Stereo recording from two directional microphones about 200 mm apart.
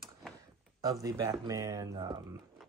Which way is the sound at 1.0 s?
15° right (ahead or behind).